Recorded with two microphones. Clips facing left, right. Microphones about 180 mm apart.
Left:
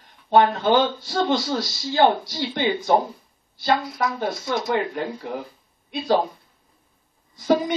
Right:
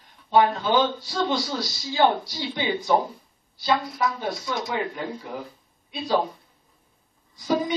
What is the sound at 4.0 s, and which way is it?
Speech, 55° left (ahead or behind).